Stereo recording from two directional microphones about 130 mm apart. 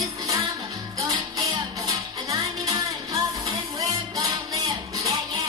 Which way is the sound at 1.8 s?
25° right (ahead or behind).